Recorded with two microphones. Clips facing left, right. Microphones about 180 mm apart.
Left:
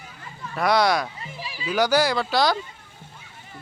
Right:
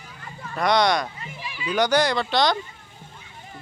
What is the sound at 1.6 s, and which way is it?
Speech, 5° left (ahead or behind).